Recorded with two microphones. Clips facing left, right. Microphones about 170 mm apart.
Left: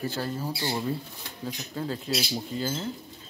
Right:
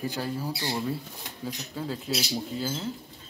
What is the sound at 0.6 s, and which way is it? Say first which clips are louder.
Speech: left 1 dB; 20° left (ahead or behind).